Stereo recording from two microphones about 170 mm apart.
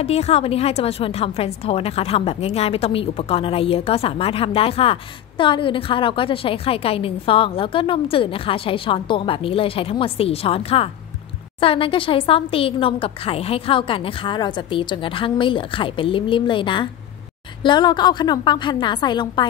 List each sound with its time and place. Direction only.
0.0 s a woman's voice: 40° left (ahead or behind)